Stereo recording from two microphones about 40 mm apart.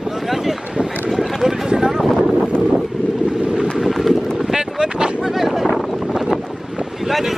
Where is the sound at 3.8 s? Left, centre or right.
Centre.